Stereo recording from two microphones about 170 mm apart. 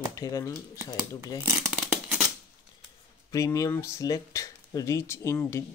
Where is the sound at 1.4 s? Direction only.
10° right (ahead or behind).